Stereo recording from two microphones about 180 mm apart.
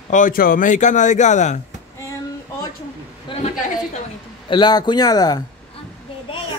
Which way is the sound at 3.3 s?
25° left (ahead or behind).